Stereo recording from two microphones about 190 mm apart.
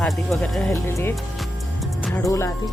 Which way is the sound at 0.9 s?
10° left (ahead or behind).